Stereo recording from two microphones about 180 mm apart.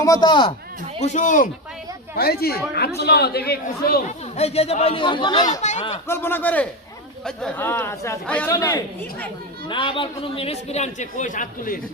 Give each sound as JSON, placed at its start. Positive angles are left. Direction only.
{"t": 0.0, "sound": "speech", "side_deg": 20}
{"t": 1.0, "sound": "a man's voice", "side_deg": 45}
{"t": 2.1, "sound": "speech", "side_deg": 60}
{"t": 4.4, "sound": "a man's voice", "side_deg": 35}
{"t": 5.5, "sound": "a man's voice", "side_deg": 40}
{"t": 6.1, "sound": "a man's voice", "side_deg": 10}